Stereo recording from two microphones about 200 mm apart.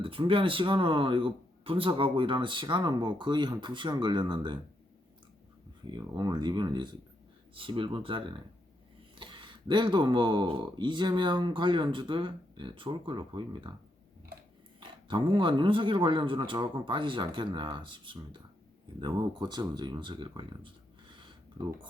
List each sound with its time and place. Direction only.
0.0 s speech: 25° right (ahead or behind)
5.9 s speech: 20° right (ahead or behind)
14.8 s speech: 25° right (ahead or behind)
21.1 s a sound: 25° right (ahead or behind)